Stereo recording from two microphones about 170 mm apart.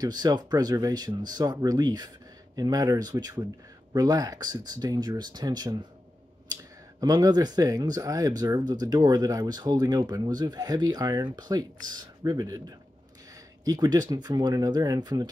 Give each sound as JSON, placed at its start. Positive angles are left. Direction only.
{"t": 0.0, "sound": "speech", "side_deg": -25}